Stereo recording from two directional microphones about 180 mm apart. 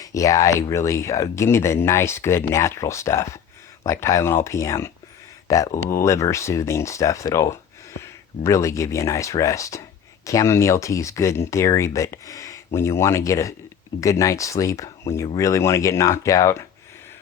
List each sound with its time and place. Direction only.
0.0 s speech: 20° left (ahead or behind)